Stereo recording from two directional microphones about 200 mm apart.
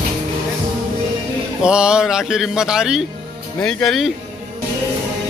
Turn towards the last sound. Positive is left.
turn(degrees=0)  # may be behind; listen again after turning